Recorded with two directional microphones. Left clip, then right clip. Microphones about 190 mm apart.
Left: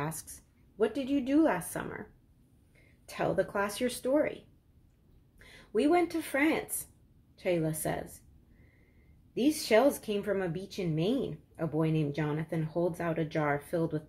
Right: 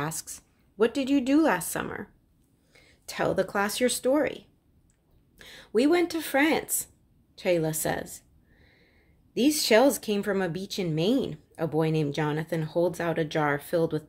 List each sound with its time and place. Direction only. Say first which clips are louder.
0.0 s speech: right 5 dB; 40° right (ahead or behind)
3.1 s speech: right 4 dB; 45° right (ahead or behind)
5.4 s speech: right 5 dB; 45° right (ahead or behind)
9.3 s speech: right 5 dB; 45° right (ahead or behind)